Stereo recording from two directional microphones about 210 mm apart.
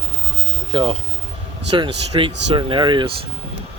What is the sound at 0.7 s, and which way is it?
Speech, 20° right (ahead or behind).